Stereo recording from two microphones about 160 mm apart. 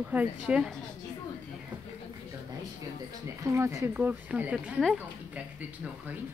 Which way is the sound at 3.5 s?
20° right (ahead or behind).